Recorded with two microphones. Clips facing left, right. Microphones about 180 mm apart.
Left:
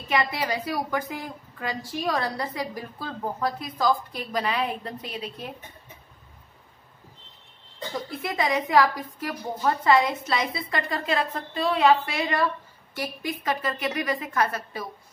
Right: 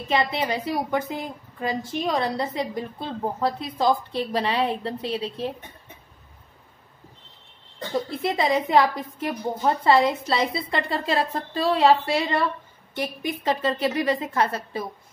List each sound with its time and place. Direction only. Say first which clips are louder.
0.1 s a woman's voice: right 2 dB; 25° right (ahead or behind)
7.9 s a woman's voice: right 6 dB; 25° right (ahead or behind)